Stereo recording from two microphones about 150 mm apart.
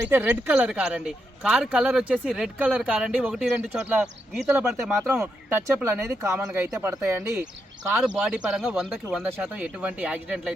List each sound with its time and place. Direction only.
0.1 s speech: 10° right (ahead or behind)